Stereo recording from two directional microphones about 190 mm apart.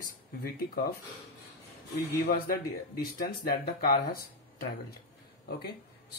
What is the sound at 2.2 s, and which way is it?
Speech, 50° left (ahead or behind).